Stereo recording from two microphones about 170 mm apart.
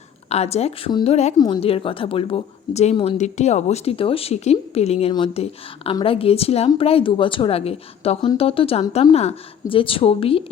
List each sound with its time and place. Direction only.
0.3 s speech: 40° left (ahead or behind)
0.9 s speech: 25° left (ahead or behind)